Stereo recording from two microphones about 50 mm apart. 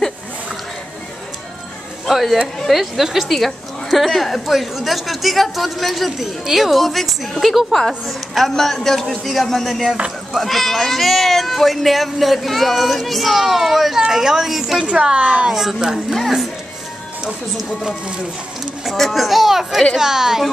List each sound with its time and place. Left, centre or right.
2.0 s speech: centre
14.9 s a woman's voice: centre
15.5 s speech: centre
18.9 s a woman's voice: centre